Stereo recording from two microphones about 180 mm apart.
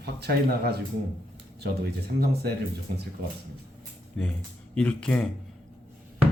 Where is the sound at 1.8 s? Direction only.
60° right (ahead or behind).